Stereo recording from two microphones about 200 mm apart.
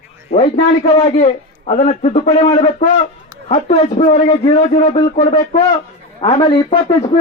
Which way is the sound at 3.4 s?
30° left (ahead or behind).